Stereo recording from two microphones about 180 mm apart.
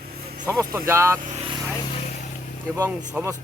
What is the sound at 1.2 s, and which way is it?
Speech, 45° right (ahead or behind).